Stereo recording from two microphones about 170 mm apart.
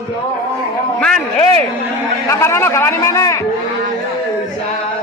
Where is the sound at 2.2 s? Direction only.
15° left (ahead or behind).